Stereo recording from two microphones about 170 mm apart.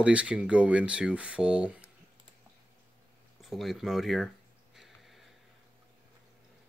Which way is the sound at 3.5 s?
Centre (ahead or behind).